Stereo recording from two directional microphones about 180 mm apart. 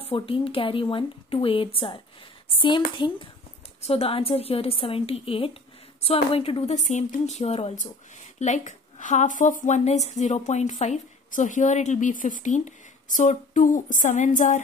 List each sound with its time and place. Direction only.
0.0 s a woman's voice: 30° left (ahead or behind)